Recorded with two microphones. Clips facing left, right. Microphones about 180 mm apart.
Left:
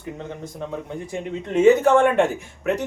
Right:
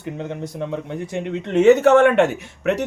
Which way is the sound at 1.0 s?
75° right (ahead or behind).